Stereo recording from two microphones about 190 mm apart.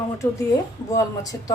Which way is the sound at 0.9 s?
20° left (ahead or behind).